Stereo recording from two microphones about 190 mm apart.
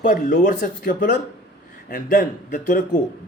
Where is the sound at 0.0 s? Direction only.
45° left (ahead or behind).